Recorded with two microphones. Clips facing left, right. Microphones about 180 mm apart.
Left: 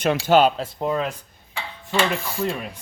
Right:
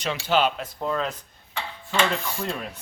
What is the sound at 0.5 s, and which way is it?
Speech, 30° left (ahead or behind).